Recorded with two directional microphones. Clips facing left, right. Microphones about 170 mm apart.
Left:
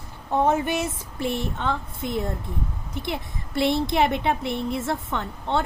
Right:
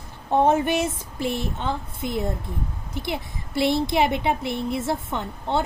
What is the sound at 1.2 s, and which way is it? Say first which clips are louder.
Speech: even; 10° right (ahead or behind).